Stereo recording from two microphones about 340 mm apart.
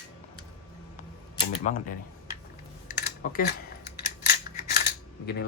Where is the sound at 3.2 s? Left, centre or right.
Left.